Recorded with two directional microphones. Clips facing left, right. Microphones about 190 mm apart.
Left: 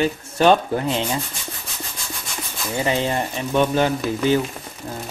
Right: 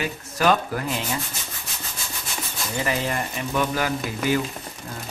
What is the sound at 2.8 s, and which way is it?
Speech, 25° left (ahead or behind).